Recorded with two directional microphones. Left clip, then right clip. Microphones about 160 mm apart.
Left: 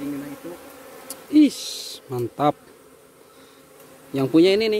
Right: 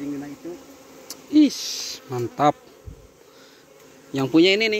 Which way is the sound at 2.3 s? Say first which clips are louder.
Right 2 dB; 5° left (ahead or behind).